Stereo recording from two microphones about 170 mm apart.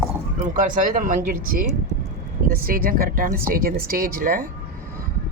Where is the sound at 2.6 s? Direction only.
60° right (ahead or behind).